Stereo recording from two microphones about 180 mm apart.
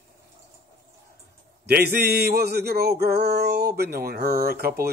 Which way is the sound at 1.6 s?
60° right (ahead or behind).